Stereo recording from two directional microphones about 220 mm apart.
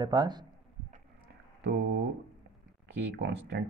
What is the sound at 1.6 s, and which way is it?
Speech, 50° right (ahead or behind).